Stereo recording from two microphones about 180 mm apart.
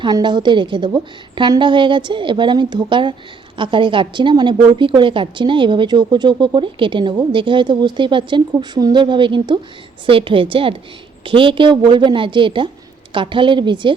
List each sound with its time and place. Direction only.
0.0 s a woman's voice: 25° right (ahead or behind)